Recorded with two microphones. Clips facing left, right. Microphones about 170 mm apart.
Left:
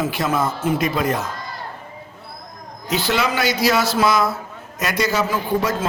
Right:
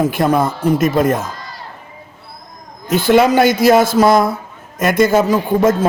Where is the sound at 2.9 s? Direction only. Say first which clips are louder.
Right 9 dB; 50° right (ahead or behind).